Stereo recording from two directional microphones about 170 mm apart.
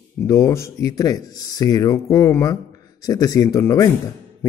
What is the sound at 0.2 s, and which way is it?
A man's voice, 15° left (ahead or behind).